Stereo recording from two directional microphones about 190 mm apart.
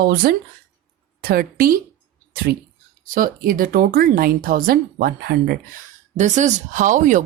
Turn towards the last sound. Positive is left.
turn(degrees=-45)  # may be behind; listen again after turning